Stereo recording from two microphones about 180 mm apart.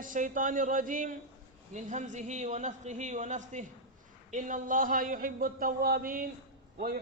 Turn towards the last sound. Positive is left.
turn(degrees=-55)  # may be behind; listen again after turning